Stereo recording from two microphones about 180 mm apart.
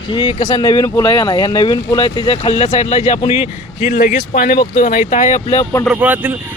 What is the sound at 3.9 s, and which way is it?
Speech, 50° left (ahead or behind).